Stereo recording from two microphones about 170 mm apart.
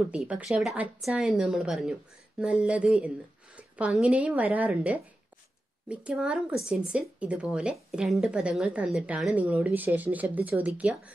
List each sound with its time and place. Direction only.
0.1 s a woman's voice: 5° right (ahead or behind)